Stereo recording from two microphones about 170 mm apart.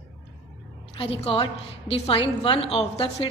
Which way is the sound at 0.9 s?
35° left (ahead or behind).